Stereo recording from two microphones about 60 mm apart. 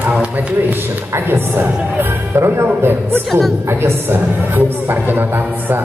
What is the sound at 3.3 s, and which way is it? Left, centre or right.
Speech, centre.